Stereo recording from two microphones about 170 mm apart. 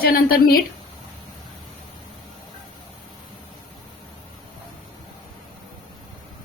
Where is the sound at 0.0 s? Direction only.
60° left (ahead or behind).